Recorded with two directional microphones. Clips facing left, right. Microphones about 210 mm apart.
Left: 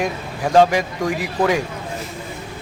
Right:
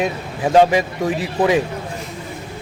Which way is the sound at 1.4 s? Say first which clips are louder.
Right 3 dB; 20° right (ahead or behind).